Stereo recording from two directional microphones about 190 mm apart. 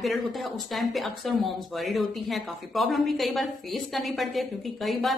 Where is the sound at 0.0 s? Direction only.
Centre (ahead or behind).